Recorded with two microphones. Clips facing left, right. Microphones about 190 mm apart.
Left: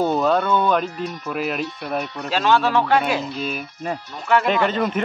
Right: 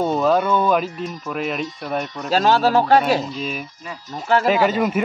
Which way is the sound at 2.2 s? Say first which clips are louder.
Right 3 dB; 40° right (ahead or behind).